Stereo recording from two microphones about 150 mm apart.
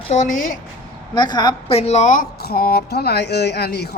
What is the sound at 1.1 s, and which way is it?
Speech, 30° left (ahead or behind).